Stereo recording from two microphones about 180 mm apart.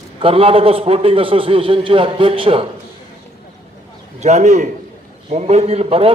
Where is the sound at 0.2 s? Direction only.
30° right (ahead or behind).